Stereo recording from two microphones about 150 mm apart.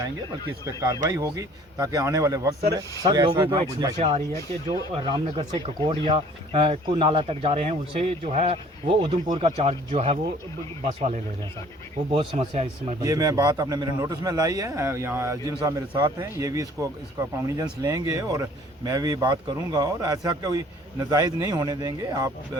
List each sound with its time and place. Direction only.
0.6 s a man's voice: 25° right (ahead or behind)
3.0 s speech: 35° right (ahead or behind)
3.9 s speech: 45° right (ahead or behind)
9.6 s speech: 45° right (ahead or behind)
12.4 s speech: 45° right (ahead or behind)
13.0 s a man's voice: 20° right (ahead or behind)
16.4 s a man's voice: 20° right (ahead or behind)